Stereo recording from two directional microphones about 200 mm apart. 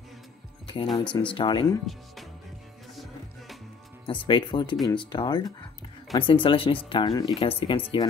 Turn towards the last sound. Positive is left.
turn(degrees=25)  # may be behind; listen again after turning